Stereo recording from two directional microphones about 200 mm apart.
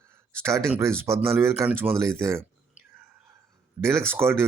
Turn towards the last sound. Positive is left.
turn(degrees=-10)  # may be behind; listen again after turning